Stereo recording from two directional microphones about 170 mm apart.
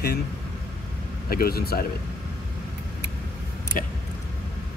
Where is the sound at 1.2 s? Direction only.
60° left (ahead or behind).